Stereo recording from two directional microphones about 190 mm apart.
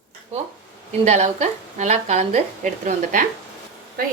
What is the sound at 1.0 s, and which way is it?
A woman's voice, 35° right (ahead or behind).